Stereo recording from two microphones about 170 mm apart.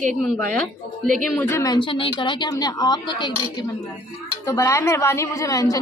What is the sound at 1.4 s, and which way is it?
Speech, 15° left (ahead or behind).